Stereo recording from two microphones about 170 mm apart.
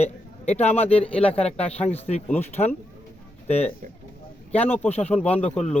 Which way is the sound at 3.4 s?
40° left (ahead or behind).